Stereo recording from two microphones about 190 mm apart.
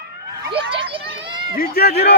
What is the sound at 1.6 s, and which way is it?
Speech, 55° left (ahead or behind).